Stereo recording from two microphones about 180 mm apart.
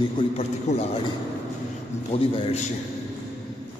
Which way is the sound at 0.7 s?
40° left (ahead or behind).